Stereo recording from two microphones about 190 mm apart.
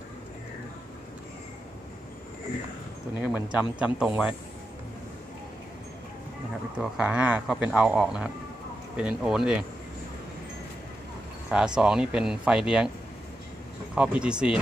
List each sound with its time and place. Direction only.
3.2 s speech: 5° right (ahead or behind)
6.8 s speech: 5° right (ahead or behind)
11.5 s speech: 5° right (ahead or behind)
13.9 s speech: 5° right (ahead or behind)